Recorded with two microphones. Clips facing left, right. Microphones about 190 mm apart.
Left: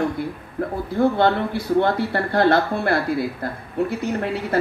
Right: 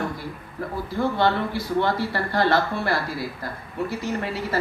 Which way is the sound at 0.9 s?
55° left (ahead or behind).